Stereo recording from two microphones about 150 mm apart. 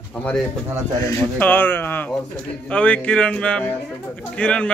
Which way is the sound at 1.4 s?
10° left (ahead or behind).